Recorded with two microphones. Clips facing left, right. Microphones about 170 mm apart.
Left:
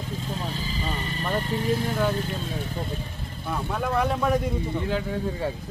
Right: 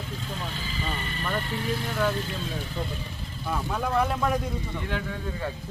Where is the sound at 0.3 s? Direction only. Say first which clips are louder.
Left 3 dB; 35° left (ahead or behind).